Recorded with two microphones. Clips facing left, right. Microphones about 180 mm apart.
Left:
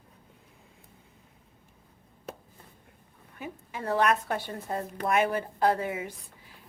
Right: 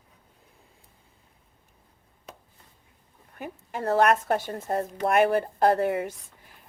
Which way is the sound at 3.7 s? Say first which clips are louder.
Right 4 dB; 45° right (ahead or behind).